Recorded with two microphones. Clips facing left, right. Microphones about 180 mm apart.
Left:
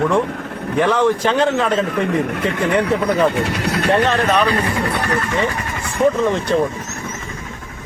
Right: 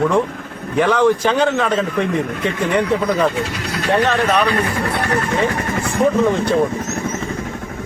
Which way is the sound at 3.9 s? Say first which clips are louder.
Right 1 dB; centre (ahead or behind).